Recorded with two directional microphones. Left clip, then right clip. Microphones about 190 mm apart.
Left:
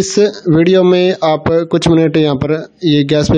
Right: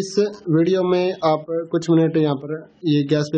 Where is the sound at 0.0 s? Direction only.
40° left (ahead or behind).